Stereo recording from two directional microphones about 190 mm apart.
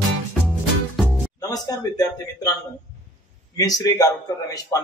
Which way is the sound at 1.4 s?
20° left (ahead or behind).